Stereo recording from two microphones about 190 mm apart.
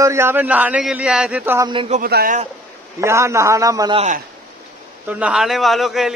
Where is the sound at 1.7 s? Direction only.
30° right (ahead or behind).